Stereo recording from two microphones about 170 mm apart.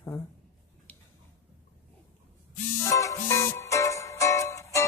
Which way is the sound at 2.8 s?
15° left (ahead or behind).